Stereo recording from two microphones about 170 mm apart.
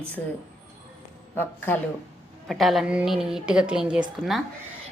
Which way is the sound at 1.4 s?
10° left (ahead or behind).